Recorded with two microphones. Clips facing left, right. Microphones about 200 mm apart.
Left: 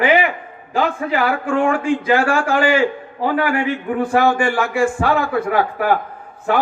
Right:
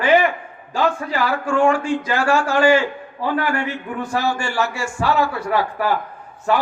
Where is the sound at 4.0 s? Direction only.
55° left (ahead or behind).